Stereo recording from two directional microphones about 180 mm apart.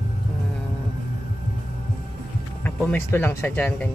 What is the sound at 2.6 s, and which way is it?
Speech, 10° left (ahead or behind).